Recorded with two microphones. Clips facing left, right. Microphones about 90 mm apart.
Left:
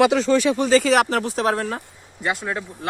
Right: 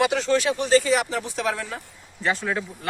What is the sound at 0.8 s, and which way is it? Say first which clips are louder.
Speech: left 5 dB; 65° left (ahead or behind).